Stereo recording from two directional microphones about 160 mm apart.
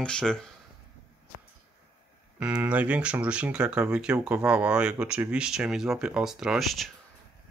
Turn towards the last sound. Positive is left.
turn(degrees=0)  # may be behind; listen again after turning